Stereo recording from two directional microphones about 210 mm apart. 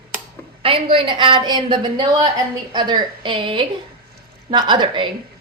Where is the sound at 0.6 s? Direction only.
25° right (ahead or behind).